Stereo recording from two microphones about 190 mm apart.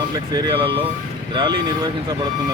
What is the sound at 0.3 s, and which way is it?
Speech, 25° right (ahead or behind).